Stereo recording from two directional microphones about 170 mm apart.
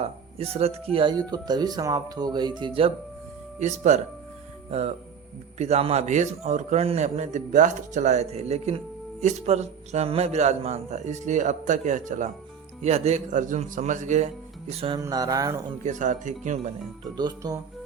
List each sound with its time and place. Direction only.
0.0 s speech: 35° right (ahead or behind)
0.9 s speech: 25° right (ahead or behind)
3.6 s a man's voice: 40° right (ahead or behind)
14.7 s a man's voice: 35° right (ahead or behind)
14.9 s speech: 20° right (ahead or behind)
15.8 s a man's voice: 45° right (ahead or behind)
17.2 s speech: 25° right (ahead or behind)